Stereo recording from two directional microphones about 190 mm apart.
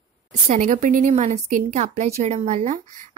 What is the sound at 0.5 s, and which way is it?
A woman's voice, 40° right (ahead or behind).